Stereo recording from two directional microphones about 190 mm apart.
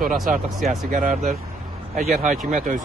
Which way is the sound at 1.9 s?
35° right (ahead or behind).